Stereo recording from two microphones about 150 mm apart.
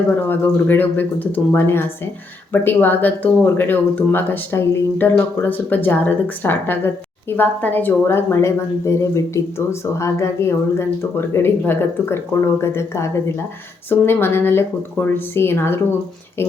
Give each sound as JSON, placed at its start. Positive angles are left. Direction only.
{"t": 0.3, "sound": "speech", "side_deg": 15}